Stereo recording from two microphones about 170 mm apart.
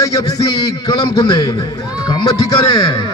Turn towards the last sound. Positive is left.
turn(degrees=25)  # may be behind; listen again after turning